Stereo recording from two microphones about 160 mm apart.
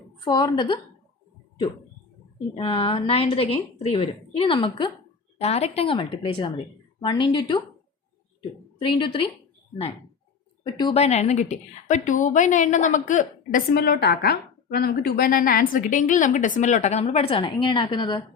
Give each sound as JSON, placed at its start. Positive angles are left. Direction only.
{"t": 0.3, "sound": "a woman's voice", "side_deg": 25}
{"t": 2.6, "sound": "a woman's voice", "side_deg": 35}
{"t": 5.4, "sound": "a woman's voice", "side_deg": 40}
{"t": 8.8, "sound": "a woman's voice", "side_deg": 30}
{"t": 10.9, "sound": "a woman's voice", "side_deg": 40}